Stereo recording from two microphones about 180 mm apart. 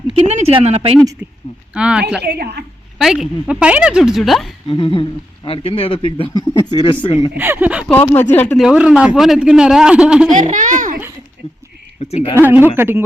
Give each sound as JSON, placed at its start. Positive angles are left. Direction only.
{"t": 0.1, "sound": "speech", "side_deg": -35}
{"t": 1.2, "sound": "a man's voice", "side_deg": -10}
{"t": 2.2, "sound": "a woman's voice", "side_deg": -65}
{"t": 3.0, "sound": "a man's voice", "side_deg": 0}
{"t": 4.7, "sound": "a sound", "side_deg": 30}
{"t": 5.5, "sound": "speech", "side_deg": 30}
{"t": 7.3, "sound": "speech", "side_deg": -10}
{"t": 7.9, "sound": "speech", "side_deg": 10}
{"t": 8.6, "sound": "a man's voice", "side_deg": -5}
{"t": 10.2, "sound": "a child's voice", "side_deg": -45}
{"t": 11.9, "sound": "speech", "side_deg": 35}
{"t": 12.3, "sound": "speech", "side_deg": -10}